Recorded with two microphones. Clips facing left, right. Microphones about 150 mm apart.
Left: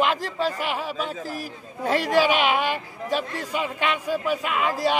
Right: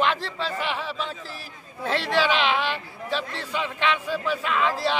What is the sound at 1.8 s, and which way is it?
Speech, 10° left (ahead or behind).